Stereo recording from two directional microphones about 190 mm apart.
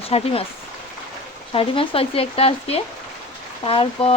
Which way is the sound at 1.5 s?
30° left (ahead or behind).